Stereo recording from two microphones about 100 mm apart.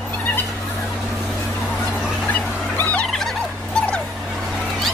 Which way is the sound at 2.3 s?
15° left (ahead or behind).